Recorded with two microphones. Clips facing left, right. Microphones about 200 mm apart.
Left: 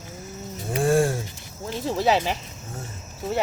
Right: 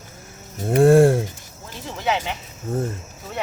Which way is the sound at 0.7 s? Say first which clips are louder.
Right 8 dB; 60° right (ahead or behind).